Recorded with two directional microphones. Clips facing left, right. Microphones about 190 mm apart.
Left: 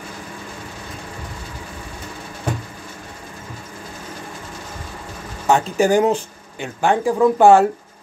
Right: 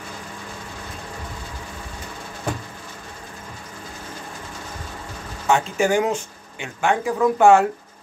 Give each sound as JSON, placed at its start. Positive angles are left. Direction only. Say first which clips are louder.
{"t": 5.5, "sound": "speech", "louder": "left 3 dB", "side_deg": 35}